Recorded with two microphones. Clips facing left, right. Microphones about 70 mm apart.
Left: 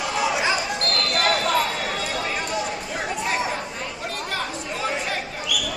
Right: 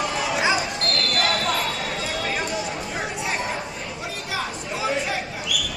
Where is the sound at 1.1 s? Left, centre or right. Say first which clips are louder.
Left 3 dB; centre.